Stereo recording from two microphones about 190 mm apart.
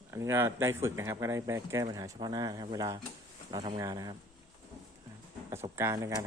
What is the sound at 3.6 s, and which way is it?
Speech, 30° right (ahead or behind).